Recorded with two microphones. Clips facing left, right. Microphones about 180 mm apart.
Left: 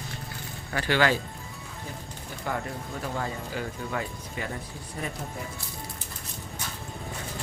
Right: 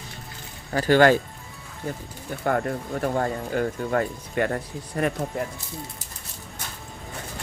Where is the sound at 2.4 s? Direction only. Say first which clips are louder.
Right 8 dB; 55° right (ahead or behind).